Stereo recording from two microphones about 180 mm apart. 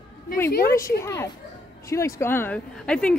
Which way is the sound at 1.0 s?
15° left (ahead or behind).